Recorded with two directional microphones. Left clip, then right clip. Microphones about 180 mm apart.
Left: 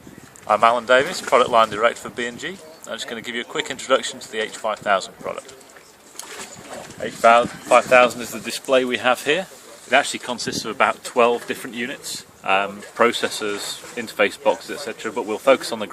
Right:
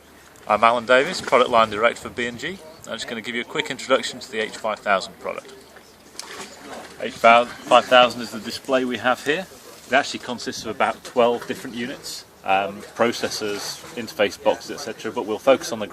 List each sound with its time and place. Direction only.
0.4 s speech: centre (ahead or behind)
7.0 s speech: 15° left (ahead or behind); by 15.9 s 30° left (ahead or behind)